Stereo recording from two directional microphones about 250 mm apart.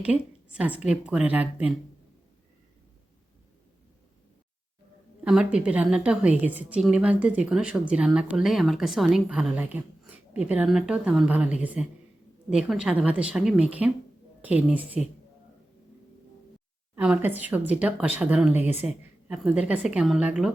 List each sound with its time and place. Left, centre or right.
0.0 s a woman's voice: centre
5.2 s a woman's voice: centre
16.9 s a woman's voice: centre